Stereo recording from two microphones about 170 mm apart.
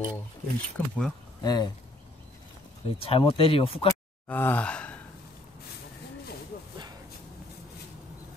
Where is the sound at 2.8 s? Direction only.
35° left (ahead or behind).